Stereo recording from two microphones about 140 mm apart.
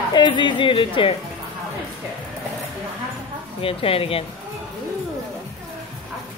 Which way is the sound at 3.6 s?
40° left (ahead or behind).